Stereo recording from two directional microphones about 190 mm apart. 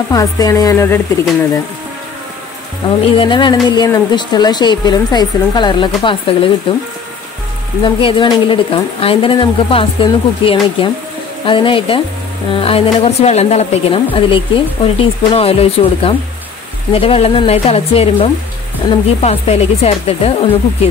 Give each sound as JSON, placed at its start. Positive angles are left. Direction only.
{"t": 0.1, "sound": "a woman's voice", "side_deg": 20}
{"t": 3.1, "sound": "a woman's voice", "side_deg": 25}
{"t": 7.8, "sound": "a woman's voice", "side_deg": 25}